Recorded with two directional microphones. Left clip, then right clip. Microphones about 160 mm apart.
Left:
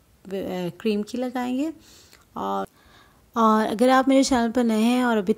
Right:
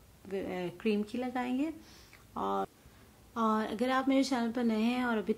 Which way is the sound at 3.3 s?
60° left (ahead or behind).